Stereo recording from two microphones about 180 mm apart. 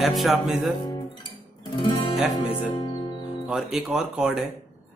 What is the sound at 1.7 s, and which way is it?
Music, 30° left (ahead or behind).